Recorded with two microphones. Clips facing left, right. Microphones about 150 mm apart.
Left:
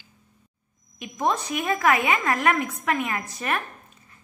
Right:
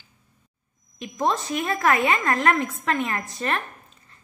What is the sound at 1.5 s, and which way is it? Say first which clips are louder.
A woman's voice: left 1 dB; 10° left (ahead or behind).